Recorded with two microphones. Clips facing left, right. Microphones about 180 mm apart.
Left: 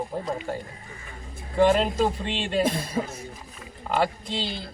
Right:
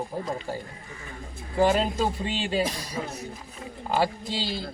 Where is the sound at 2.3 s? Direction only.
5° right (ahead or behind).